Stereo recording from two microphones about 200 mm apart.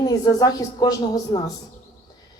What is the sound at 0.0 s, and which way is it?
A woman's voice, 20° left (ahead or behind).